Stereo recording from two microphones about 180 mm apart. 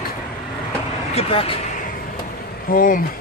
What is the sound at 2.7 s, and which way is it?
Speech, 50° left (ahead or behind).